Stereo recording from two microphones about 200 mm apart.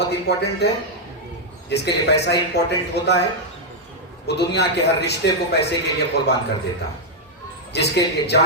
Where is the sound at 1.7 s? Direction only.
55° left (ahead or behind).